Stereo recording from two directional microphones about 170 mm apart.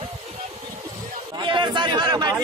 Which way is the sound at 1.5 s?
25° right (ahead or behind).